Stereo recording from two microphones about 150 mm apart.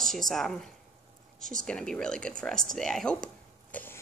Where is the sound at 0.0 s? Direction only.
Centre (ahead or behind).